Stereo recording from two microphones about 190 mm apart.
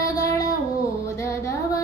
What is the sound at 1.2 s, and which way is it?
Music, 15° left (ahead or behind).